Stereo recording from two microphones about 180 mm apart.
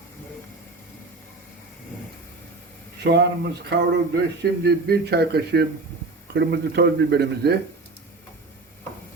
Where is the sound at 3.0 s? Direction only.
70° right (ahead or behind).